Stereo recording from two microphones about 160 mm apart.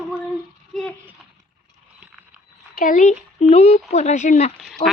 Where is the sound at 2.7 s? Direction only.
55° left (ahead or behind).